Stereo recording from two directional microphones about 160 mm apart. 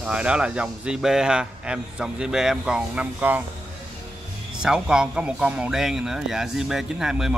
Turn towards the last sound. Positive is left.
turn(degrees=-5)  # may be behind; listen again after turning